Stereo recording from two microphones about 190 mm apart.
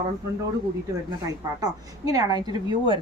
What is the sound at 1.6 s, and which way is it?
A woman's voice, 20° right (ahead or behind).